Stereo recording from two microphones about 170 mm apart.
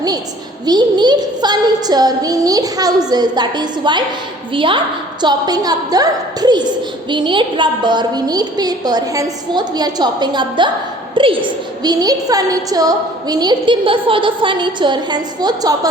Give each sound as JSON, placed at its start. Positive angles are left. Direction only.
{"t": 0.6, "sound": "a woman's voice", "side_deg": -25}